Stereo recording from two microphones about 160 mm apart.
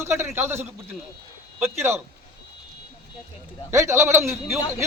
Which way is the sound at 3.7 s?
15° right (ahead or behind).